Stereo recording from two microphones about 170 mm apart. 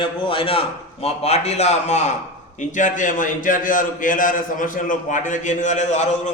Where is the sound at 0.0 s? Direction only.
30° left (ahead or behind).